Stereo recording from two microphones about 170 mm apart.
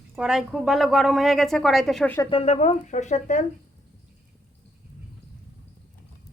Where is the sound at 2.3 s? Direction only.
35° left (ahead or behind).